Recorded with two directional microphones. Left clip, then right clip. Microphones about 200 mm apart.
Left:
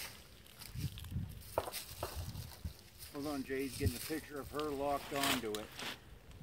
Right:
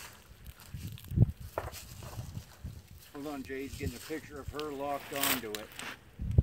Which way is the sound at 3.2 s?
55° right (ahead or behind).